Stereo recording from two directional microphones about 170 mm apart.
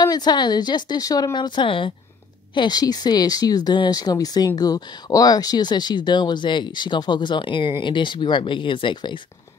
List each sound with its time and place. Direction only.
0.0 s speech: 25° left (ahead or behind)